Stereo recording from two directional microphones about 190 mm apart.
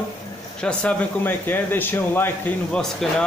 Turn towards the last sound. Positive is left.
turn(degrees=5)  # may be behind; listen again after turning